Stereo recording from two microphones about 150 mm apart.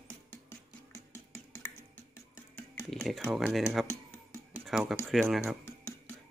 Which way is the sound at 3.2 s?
5° right (ahead or behind).